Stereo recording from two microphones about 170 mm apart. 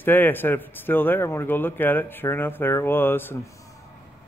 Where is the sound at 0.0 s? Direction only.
10° left (ahead or behind).